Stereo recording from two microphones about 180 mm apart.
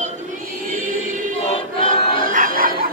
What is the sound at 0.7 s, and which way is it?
Music, 45° right (ahead or behind).